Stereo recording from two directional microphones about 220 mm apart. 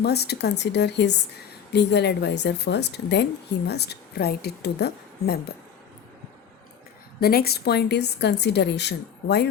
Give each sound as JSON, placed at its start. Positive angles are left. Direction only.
{"t": 0.0, "sound": "a woman's voice", "side_deg": 50}
{"t": 7.2, "sound": "a woman's voice", "side_deg": 45}